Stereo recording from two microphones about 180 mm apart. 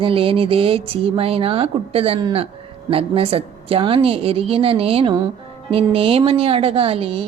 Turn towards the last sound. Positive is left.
turn(degrees=-30)  # may be behind; listen again after turning